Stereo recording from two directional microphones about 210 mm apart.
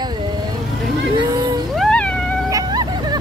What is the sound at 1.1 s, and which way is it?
Speech, 20° right (ahead or behind).